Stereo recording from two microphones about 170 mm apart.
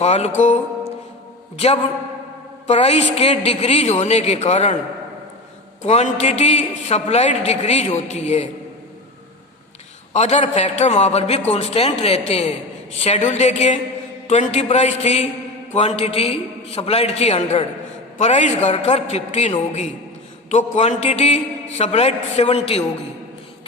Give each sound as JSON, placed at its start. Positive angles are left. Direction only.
{"t": 0.0, "sound": "music", "side_deg": 40}
{"t": 1.5, "sound": "a woman's voice", "side_deg": 35}
{"t": 5.8, "sound": "a woman's voice", "side_deg": 40}
{"t": 10.1, "sound": "a woman's voice", "side_deg": 40}